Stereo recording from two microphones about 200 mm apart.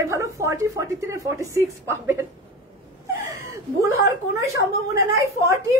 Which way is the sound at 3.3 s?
15° right (ahead or behind).